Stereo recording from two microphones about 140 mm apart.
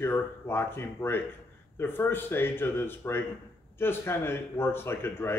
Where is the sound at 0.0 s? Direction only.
15° left (ahead or behind).